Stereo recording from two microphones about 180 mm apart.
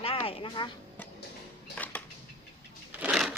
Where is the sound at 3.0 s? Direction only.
5° right (ahead or behind).